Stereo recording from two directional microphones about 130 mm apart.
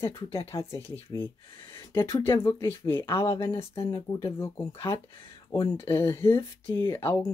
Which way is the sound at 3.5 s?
45° left (ahead or behind).